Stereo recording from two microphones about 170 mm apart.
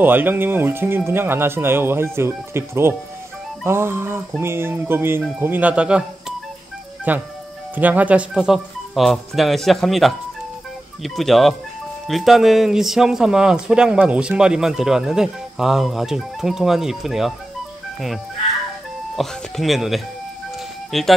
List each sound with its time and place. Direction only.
0.0 s speech: 10° right (ahead or behind)
19.1 s speech: centre (ahead or behind)